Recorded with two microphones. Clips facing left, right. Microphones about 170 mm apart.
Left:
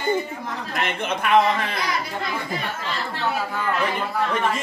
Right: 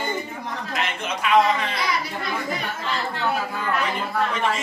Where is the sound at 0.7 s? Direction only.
55° left (ahead or behind).